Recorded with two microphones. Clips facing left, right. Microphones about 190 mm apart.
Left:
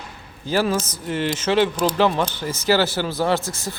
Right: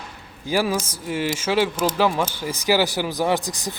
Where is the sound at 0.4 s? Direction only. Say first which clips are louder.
Left 1 dB; 10° right (ahead or behind).